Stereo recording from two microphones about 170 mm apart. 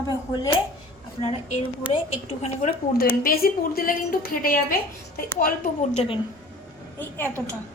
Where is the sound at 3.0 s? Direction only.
60° left (ahead or behind).